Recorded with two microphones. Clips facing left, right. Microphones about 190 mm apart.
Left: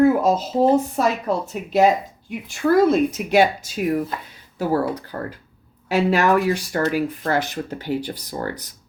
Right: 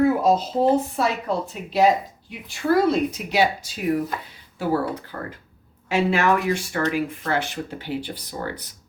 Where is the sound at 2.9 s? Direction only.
50° left (ahead or behind).